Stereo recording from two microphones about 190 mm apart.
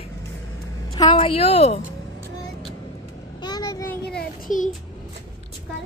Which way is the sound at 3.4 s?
20° left (ahead or behind).